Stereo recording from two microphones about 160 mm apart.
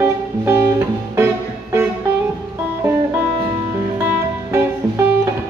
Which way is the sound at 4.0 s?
15° right (ahead or behind).